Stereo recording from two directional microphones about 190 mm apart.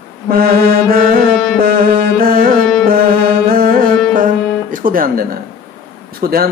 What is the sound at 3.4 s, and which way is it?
Music, 50° right (ahead or behind).